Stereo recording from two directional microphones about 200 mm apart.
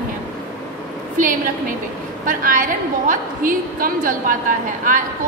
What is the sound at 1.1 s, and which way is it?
A woman's voice, 40° right (ahead or behind).